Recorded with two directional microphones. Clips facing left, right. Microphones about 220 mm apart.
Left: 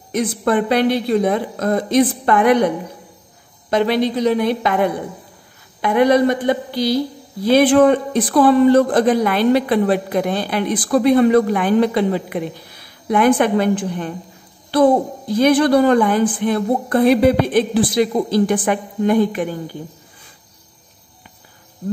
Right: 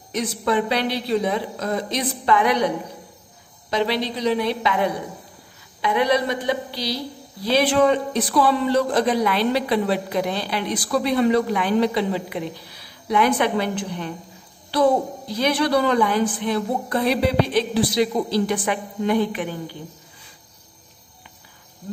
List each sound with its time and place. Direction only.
0.1 s a man's voice: 50° left (ahead or behind)
3.7 s a man's voice: 50° left (ahead or behind)